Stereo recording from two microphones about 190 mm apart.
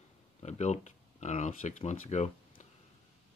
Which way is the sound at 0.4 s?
35° left (ahead or behind).